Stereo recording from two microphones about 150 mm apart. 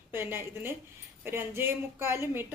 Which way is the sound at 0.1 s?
15° right (ahead or behind).